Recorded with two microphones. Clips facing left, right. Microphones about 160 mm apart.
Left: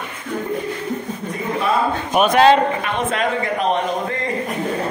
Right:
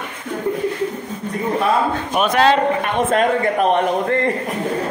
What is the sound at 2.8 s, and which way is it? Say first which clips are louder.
Speech: right 4 dB; 45° right (ahead or behind).